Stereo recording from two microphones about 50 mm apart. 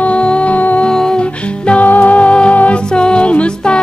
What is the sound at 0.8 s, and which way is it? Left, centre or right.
Music, centre.